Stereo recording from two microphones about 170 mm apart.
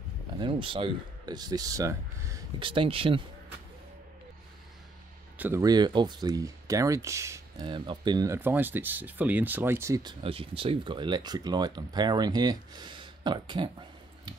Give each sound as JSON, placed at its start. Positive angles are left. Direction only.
{"t": 0.4, "sound": "speech", "side_deg": -30}
{"t": 2.6, "sound": "speech", "side_deg": -30}
{"t": 5.4, "sound": "speech", "side_deg": -15}
{"t": 7.6, "sound": "speech", "side_deg": -30}
{"t": 8.4, "sound": "speech", "side_deg": -10}
{"t": 10.2, "sound": "speech", "side_deg": -35}